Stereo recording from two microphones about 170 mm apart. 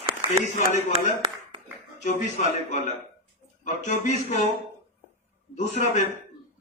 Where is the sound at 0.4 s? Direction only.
45° left (ahead or behind).